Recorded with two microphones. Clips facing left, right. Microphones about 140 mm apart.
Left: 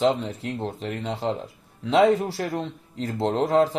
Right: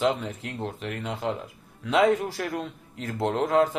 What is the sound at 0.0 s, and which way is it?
Speech, 30° left (ahead or behind).